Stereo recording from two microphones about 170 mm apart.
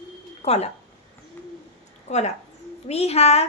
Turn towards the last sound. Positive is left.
turn(degrees=40)  # may be behind; listen again after turning